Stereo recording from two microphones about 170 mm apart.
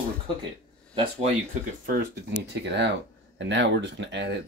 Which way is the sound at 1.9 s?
90° right.